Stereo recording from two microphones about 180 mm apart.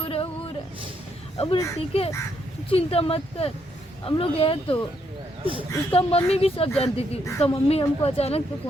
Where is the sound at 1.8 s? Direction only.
30° left (ahead or behind).